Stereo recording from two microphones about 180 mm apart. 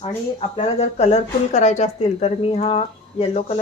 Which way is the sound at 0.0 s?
35° left (ahead or behind).